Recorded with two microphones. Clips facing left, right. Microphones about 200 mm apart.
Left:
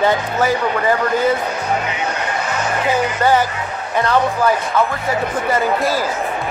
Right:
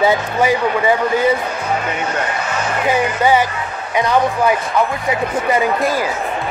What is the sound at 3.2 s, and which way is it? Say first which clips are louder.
Speech: right 1 dB; 10° right (ahead or behind).